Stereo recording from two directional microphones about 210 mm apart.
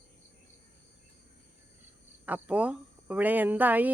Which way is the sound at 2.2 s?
5° right (ahead or behind).